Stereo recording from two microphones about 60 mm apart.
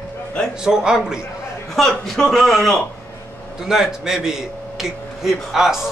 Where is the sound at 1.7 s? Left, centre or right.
Centre.